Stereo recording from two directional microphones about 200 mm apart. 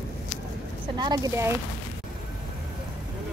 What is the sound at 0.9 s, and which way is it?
Speech, 20° right (ahead or behind).